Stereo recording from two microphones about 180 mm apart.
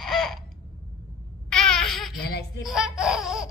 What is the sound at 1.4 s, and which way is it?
Babbling, 5° left (ahead or behind).